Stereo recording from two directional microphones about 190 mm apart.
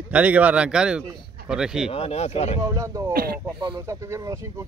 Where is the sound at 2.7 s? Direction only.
15° right (ahead or behind).